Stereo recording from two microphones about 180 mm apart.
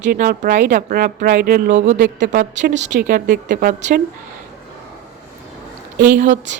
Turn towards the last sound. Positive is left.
turn(degrees=-45)  # may be behind; listen again after turning